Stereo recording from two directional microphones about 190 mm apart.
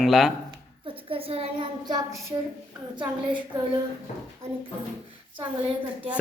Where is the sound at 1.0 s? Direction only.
30° right (ahead or behind).